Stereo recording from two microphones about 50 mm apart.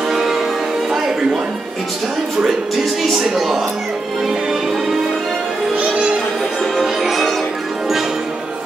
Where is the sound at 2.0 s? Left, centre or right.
Centre.